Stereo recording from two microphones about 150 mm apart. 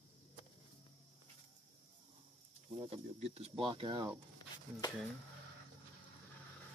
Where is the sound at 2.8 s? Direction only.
40° right (ahead or behind).